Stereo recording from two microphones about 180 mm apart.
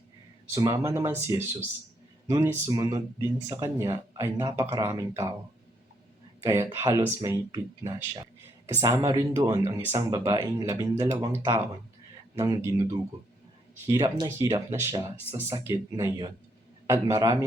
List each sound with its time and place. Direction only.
0.5 s speech: 20° right (ahead or behind)
6.4 s speech: 15° right (ahead or behind)
12.4 s speech: 20° right (ahead or behind)